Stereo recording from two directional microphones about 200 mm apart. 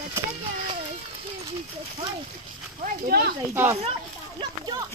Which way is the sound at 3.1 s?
50° right (ahead or behind).